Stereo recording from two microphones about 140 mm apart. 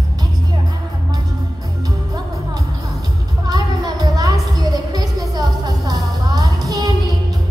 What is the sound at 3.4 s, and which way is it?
Music, 25° right (ahead or behind).